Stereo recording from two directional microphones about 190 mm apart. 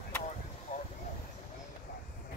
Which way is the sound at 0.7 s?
40° left (ahead or behind).